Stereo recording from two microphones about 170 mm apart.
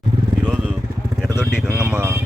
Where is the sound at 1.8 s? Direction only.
15° right (ahead or behind).